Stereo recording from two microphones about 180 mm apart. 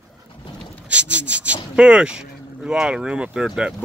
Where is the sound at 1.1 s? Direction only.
5° right (ahead or behind).